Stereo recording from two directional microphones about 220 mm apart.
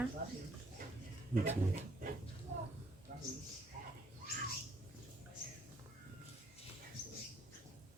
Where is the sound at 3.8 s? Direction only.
40° right (ahead or behind).